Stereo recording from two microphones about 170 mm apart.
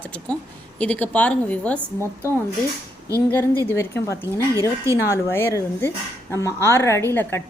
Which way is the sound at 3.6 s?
15° left (ahead or behind).